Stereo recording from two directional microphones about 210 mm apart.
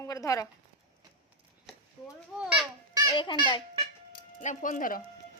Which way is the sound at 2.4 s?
5° right (ahead or behind).